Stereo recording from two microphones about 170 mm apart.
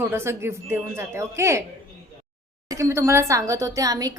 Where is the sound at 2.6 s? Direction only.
20° right (ahead or behind).